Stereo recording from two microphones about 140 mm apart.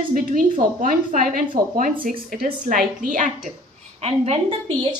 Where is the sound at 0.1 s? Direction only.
75° right (ahead or behind).